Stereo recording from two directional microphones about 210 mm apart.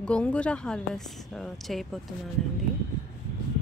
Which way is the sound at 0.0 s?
5° left (ahead or behind).